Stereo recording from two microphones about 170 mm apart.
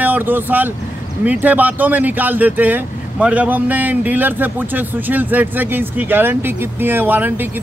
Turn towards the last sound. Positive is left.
turn(degrees=-10)  # may be behind; listen again after turning